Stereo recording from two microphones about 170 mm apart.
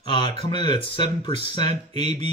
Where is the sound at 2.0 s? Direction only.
40° right (ahead or behind).